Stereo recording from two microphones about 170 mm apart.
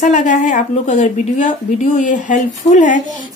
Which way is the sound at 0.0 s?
50° left (ahead or behind).